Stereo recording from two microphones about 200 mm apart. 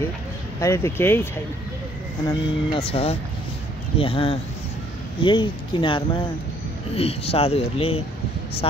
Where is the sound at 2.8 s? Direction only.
30° left (ahead or behind).